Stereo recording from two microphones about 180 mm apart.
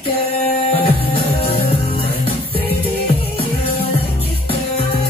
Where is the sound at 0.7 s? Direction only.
35° left (ahead or behind).